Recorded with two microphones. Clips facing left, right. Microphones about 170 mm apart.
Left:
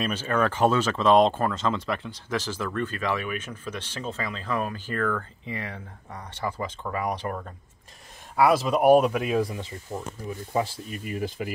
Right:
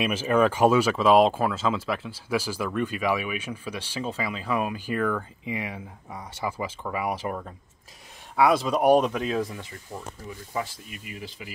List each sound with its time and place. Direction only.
0.0 s speech: 10° right (ahead or behind); by 9.7 s 15° left (ahead or behind)
10.5 s speech: 30° left (ahead or behind)
11.1 s speech: 50° left (ahead or behind)